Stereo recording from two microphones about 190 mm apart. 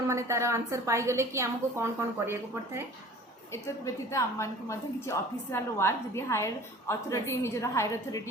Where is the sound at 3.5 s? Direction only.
15° left (ahead or behind).